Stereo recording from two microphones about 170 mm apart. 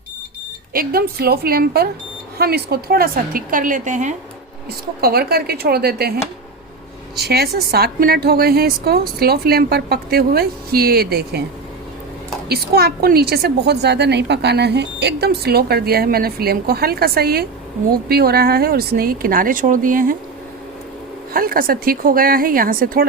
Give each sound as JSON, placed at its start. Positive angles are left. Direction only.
{"t": 0.7, "sound": "a woman's voice", "side_deg": -60}
{"t": 4.9, "sound": "a woman's voice", "side_deg": -65}
{"t": 7.2, "sound": "a woman's voice", "side_deg": -70}
{"t": 12.5, "sound": "a woman's voice", "side_deg": -70}
{"t": 21.3, "sound": "a woman's voice", "side_deg": -55}